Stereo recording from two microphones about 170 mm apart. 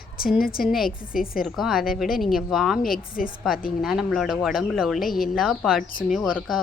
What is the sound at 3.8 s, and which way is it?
Speech, centre (ahead or behind).